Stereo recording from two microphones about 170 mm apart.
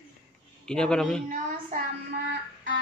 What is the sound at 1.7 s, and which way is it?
Child singing, 55° right (ahead or behind).